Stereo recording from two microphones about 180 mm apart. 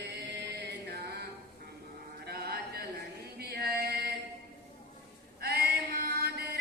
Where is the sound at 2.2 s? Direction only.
60° right (ahead or behind).